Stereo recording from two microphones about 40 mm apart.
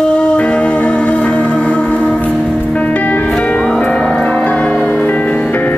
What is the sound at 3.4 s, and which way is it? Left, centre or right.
Music, left.